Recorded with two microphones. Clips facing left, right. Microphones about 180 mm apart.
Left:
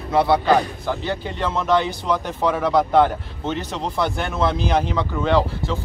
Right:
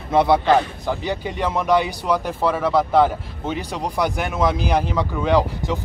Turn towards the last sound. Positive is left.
turn(degrees=-15)  # may be behind; listen again after turning